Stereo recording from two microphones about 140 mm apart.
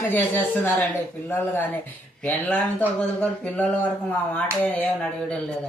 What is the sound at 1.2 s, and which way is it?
Speech, 15° left (ahead or behind).